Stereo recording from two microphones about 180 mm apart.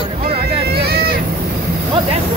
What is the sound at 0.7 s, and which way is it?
Vehicle, 60° right (ahead or behind).